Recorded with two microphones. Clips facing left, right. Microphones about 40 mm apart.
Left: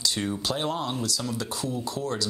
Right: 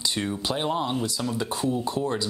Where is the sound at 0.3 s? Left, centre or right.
Centre.